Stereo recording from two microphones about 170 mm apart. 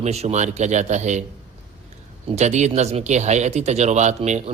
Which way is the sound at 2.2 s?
40° right (ahead or behind).